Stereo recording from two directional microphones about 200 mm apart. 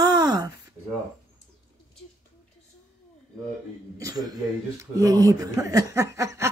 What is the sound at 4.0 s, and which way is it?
A woman's voice, 20° right (ahead or behind).